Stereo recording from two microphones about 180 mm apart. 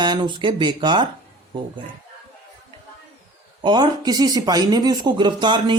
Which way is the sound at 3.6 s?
25° right (ahead or behind).